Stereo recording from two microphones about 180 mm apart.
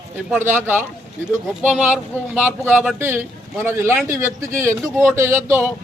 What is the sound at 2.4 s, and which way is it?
Speech, 10° right (ahead or behind).